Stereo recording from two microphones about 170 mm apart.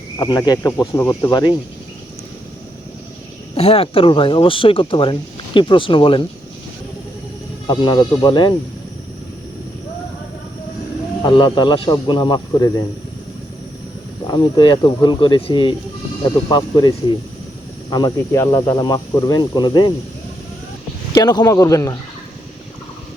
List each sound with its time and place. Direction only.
0.2 s speech: 25° left (ahead or behind)
3.5 s speech: 35° left (ahead or behind)
7.7 s speech: 25° left (ahead or behind)
11.2 s speech: 25° left (ahead or behind)
14.3 s speech: 25° left (ahead or behind)
17.9 s speech: 20° left (ahead or behind)
21.2 s speech: 20° left (ahead or behind)